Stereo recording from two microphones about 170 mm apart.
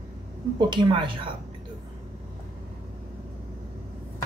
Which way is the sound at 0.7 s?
30° right (ahead or behind).